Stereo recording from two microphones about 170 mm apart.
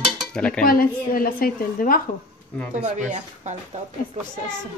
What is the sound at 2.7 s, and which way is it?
Speech, 45° right (ahead or behind).